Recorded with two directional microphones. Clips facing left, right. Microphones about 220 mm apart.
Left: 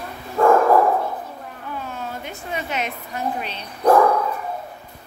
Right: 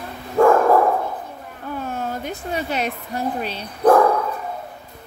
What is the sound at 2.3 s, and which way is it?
Speech, 35° right (ahead or behind).